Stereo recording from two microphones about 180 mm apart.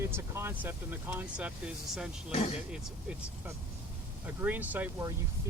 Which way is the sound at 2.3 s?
35° left (ahead or behind).